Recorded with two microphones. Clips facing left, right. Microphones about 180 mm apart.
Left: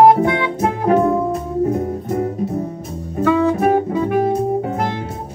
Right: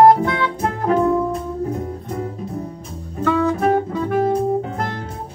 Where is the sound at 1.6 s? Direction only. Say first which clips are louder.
Left 6 dB; 40° left (ahead or behind).